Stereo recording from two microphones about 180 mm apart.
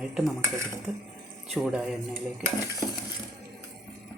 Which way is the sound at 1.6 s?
Centre (ahead or behind).